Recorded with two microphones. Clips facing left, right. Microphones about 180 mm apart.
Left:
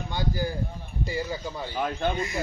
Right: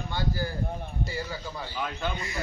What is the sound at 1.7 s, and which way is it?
Speech, 45° left (ahead or behind).